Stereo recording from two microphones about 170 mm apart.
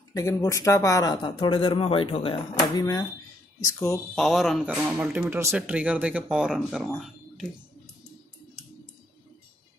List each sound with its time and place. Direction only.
0.1 s speech: 20° left (ahead or behind)
2.7 s speech: 20° left (ahead or behind)
4.1 s speech: centre (ahead or behind)